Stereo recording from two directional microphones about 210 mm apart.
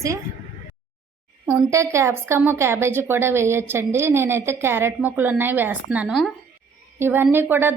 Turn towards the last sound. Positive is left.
turn(degrees=-10)  # may be behind; listen again after turning